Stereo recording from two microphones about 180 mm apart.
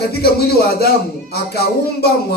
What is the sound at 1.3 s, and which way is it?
Speech, 60° left (ahead or behind).